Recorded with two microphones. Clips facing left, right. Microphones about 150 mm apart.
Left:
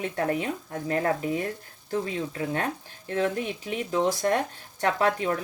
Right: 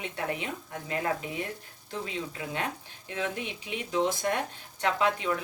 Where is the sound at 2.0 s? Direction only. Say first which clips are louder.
Left 2 dB; 45° left (ahead or behind).